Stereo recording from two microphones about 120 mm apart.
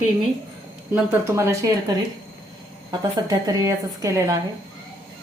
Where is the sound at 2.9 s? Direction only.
30° right (ahead or behind).